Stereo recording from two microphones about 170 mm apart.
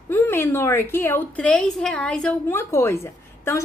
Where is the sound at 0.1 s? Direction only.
15° left (ahead or behind).